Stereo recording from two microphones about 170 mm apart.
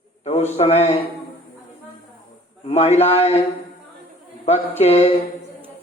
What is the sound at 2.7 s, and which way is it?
Speech, 40° left (ahead or behind).